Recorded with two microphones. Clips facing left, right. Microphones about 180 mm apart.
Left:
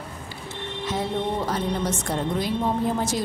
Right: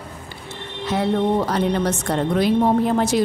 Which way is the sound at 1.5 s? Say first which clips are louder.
Right 5 dB; 75° right (ahead or behind).